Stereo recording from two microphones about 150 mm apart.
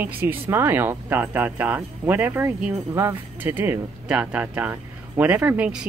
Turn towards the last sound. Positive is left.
turn(degrees=-10)  # may be behind; listen again after turning